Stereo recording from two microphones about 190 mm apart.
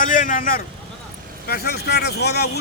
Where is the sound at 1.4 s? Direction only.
55° left (ahead or behind).